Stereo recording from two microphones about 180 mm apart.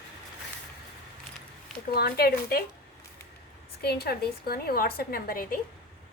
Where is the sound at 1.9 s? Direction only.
60° left (ahead or behind).